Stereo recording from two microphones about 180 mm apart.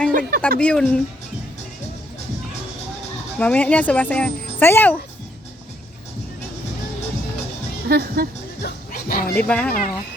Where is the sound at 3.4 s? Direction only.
5° left (ahead or behind).